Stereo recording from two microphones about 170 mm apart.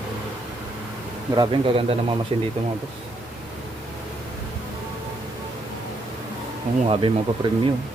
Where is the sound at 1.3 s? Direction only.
25° right (ahead or behind).